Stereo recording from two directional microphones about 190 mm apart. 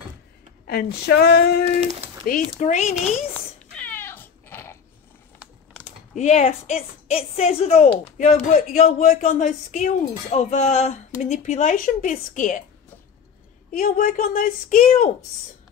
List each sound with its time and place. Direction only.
0.7 s a sound: 55° left (ahead or behind)
1.8 s speech: 30° right (ahead or behind)
2.3 s a woman's voice: 50° left (ahead or behind)
2.6 s a woman's voice: 35° left (ahead or behind)
3.3 s cat: 10° left (ahead or behind)
6.1 s a woman's voice: 35° left (ahead or behind)
13.7 s a woman's voice: 45° left (ahead or behind)